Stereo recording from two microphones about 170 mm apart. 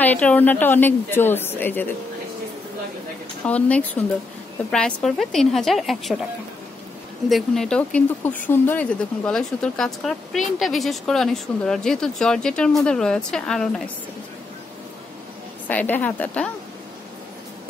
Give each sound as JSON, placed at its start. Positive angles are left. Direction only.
{"t": 0.0, "sound": "a woman's voice", "side_deg": 10}
{"t": 3.4, "sound": "a woman's voice", "side_deg": 10}
{"t": 7.2, "sound": "speech", "side_deg": 0}
{"t": 15.7, "sound": "a woman's voice", "side_deg": 10}